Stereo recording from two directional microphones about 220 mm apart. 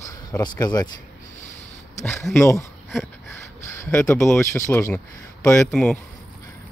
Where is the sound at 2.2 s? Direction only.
10° left (ahead or behind).